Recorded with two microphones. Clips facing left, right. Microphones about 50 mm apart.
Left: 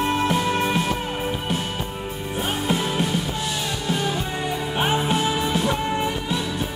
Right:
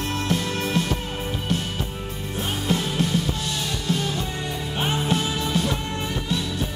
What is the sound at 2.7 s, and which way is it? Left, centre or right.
Music, centre.